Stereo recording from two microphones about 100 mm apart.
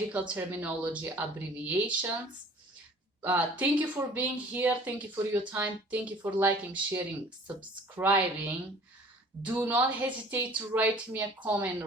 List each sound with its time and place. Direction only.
0.1 s speech: 15° right (ahead or behind)
3.2 s speech: 15° right (ahead or behind)